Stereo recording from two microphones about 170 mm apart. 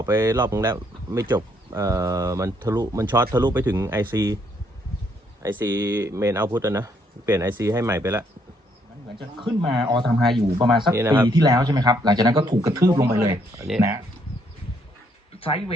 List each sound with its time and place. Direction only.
0.0 s speech: 15° right (ahead or behind)
5.4 s speech: 15° right (ahead or behind)
9.6 s speech: centre (ahead or behind)
10.9 s a man's voice: 15° right (ahead or behind)
15.4 s speech: 35° left (ahead or behind)